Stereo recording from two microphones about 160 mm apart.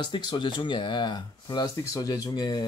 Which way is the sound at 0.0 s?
30° left (ahead or behind).